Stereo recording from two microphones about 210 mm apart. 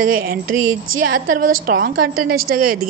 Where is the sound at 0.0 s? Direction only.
45° right (ahead or behind).